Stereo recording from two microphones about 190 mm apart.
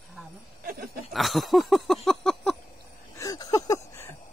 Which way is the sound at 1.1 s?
Centre (ahead or behind).